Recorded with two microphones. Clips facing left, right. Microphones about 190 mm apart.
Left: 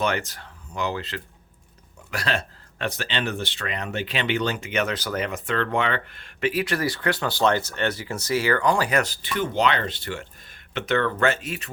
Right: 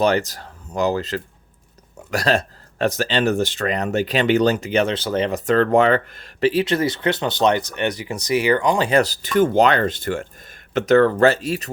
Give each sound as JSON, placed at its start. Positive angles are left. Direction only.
{"t": 0.0, "sound": "speech", "side_deg": -35}
{"t": 5.5, "sound": "speech", "side_deg": -40}
{"t": 8.9, "sound": "speech", "side_deg": -35}